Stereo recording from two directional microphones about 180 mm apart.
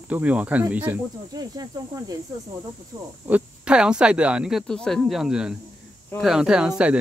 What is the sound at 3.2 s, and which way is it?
Speech, 5° right (ahead or behind).